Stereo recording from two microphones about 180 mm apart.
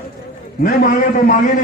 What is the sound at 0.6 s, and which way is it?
Speech, 45° left (ahead or behind).